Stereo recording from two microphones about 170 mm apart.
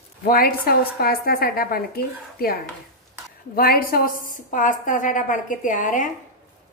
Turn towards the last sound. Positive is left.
turn(degrees=50)  # may be behind; listen again after turning